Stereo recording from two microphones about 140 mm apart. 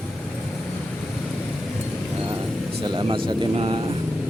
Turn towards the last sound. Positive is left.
turn(degrees=-40)  # may be behind; listen again after turning